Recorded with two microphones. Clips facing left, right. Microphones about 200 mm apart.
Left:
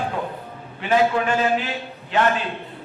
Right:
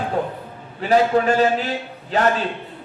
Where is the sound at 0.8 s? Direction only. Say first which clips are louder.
Right 3 dB; 40° right (ahead or behind).